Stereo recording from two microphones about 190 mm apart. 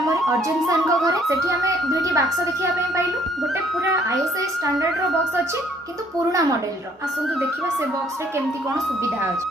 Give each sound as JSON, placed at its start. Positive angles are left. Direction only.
{"t": 1.0, "sound": "speech", "side_deg": -15}